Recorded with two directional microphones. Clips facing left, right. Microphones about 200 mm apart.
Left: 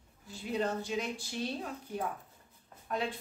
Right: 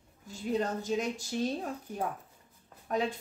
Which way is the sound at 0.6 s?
45° right (ahead or behind).